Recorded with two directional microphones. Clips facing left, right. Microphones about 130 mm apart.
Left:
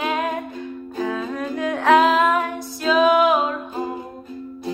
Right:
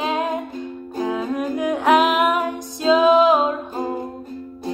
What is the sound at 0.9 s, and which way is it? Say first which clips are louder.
Music: right 3 dB; 15° right (ahead or behind).